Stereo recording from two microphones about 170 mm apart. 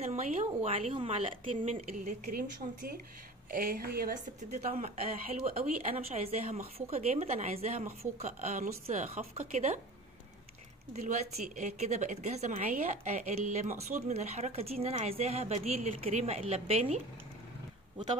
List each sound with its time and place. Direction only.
0.0 s a woman's voice: 40° right (ahead or behind); by 4.2 s 65° right (ahead or behind)
4.4 s a woman's voice: 45° right (ahead or behind)
11.0 s a woman's voice: 45° right (ahead or behind)